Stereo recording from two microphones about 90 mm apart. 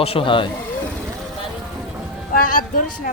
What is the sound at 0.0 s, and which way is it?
Speech, 85° left.